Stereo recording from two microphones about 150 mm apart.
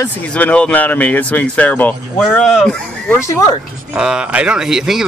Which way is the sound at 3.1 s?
20° left (ahead or behind).